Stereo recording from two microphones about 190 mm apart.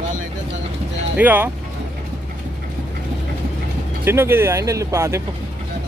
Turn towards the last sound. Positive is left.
turn(degrees=-15)  # may be behind; listen again after turning